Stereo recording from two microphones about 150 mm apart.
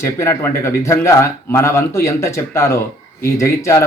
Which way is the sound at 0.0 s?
20° left (ahead or behind).